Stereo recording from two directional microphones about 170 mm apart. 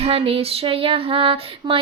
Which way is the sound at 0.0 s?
35° right (ahead or behind).